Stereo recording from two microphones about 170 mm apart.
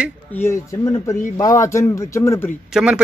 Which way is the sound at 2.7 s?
5° right (ahead or behind).